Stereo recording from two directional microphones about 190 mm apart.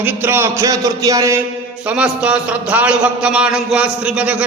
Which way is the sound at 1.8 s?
5° right (ahead or behind).